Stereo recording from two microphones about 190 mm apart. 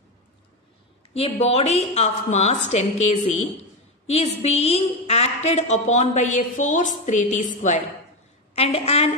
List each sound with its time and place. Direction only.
1.1 s a woman's voice: 35° left (ahead or behind)